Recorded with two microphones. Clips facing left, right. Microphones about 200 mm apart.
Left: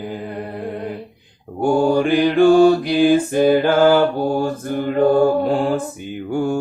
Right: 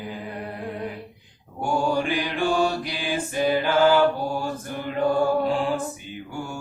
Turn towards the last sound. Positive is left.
turn(degrees=55)  # may be behind; listen again after turning